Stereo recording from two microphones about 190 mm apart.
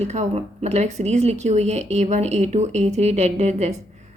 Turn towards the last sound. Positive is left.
turn(degrees=-35)  # may be behind; listen again after turning